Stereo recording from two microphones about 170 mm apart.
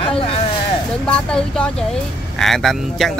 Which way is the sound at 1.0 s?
5° left (ahead or behind).